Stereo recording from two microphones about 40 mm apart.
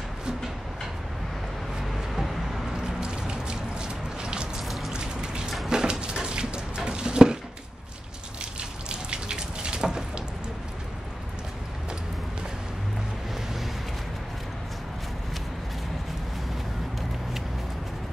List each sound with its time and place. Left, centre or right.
1.9 s vehicle: centre
3.0 s music: right
4.6 s raindrop: centre
4.9 s a sound: right
8.8 s water: right